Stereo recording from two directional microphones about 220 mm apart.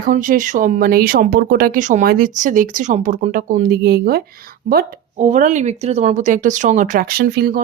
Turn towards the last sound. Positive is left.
turn(degrees=-45)  # may be behind; listen again after turning